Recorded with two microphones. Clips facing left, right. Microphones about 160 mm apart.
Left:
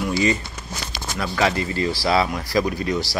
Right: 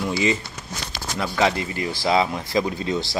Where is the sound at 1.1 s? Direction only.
15° right (ahead or behind).